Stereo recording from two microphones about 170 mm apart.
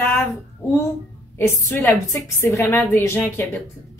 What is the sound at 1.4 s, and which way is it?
A woman's voice, 15° left (ahead or behind).